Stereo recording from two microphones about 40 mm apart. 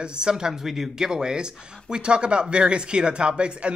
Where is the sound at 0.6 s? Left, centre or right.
Centre.